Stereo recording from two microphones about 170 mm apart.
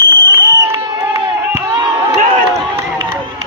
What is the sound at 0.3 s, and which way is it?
Crowd, 25° right (ahead or behind).